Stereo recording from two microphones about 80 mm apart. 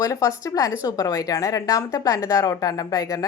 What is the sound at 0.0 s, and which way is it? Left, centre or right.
A woman's voice, left.